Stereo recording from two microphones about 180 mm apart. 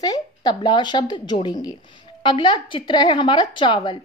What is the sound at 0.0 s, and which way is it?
A woman's voice, 25° left (ahead or behind).